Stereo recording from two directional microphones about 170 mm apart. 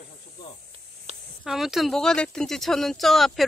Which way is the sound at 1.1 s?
40° right (ahead or behind).